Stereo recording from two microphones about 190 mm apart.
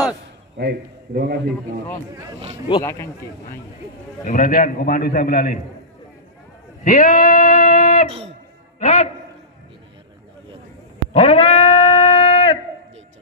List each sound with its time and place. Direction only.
0.6 s a man's voice: 55° right (ahead or behind)
2.8 s speech: 15° left (ahead or behind)
4.3 s a man's voice: 45° left (ahead or behind)
6.8 s a man's voice: 45° left (ahead or behind)
11.1 s a sound: 30° left (ahead or behind)